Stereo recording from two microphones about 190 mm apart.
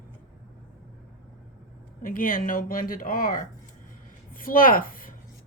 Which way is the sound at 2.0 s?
50° left (ahead or behind).